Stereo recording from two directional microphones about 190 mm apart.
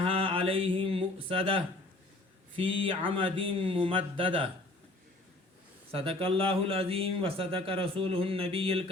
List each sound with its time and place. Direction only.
0.0 s a sound: 30° right (ahead or behind)
2.6 s speech: 30° right (ahead or behind)
5.9 s speech: 30° right (ahead or behind)